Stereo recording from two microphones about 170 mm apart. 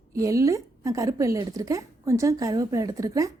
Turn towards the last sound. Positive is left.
turn(degrees=-20)  # may be behind; listen again after turning